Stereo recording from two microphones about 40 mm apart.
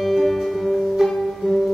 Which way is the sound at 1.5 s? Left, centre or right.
Centre.